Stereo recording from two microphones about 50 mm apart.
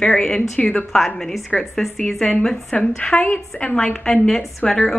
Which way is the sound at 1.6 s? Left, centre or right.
Centre.